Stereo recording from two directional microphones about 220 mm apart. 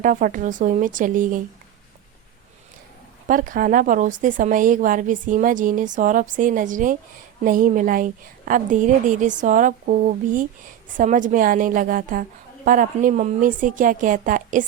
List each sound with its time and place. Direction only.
0.0 s speech: 35° right (ahead or behind)
3.2 s speech: 40° right (ahead or behind)